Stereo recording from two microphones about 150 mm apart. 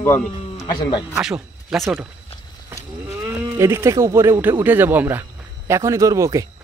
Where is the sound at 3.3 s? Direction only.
20° right (ahead or behind).